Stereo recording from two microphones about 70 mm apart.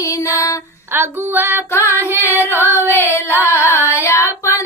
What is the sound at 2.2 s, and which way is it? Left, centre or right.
Singing, left.